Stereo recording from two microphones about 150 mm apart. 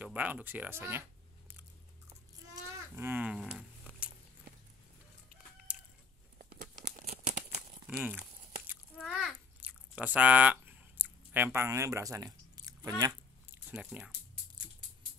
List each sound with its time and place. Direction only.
0.0 s speech: 10° right (ahead or behind)
2.5 s livestock: 15° right (ahead or behind)
5.7 s chicken: 10° right (ahead or behind)
6.3 s tearing: 60° right (ahead or behind)
7.1 s crumpling: 50° right (ahead or behind)
8.0 s speech: 10° right (ahead or behind)
8.9 s a sound: centre (ahead or behind)
9.6 s chewing: 10° right (ahead or behind); by 13.1 s 25° right (ahead or behind)
13.5 s chewing: 15° right (ahead or behind)